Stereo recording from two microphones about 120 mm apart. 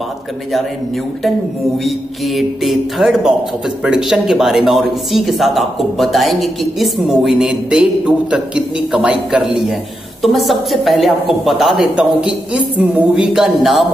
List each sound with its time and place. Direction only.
1.9 s speech: centre (ahead or behind)